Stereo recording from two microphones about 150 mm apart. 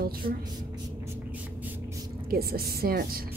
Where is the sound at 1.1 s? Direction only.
10° right (ahead or behind).